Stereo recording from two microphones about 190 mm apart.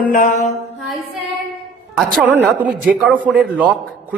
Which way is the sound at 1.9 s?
Centre (ahead or behind).